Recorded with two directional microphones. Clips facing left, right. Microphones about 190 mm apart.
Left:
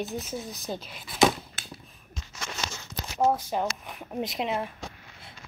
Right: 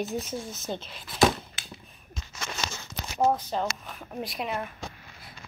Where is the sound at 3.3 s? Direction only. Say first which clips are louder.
Left 1 dB; 10° left (ahead or behind).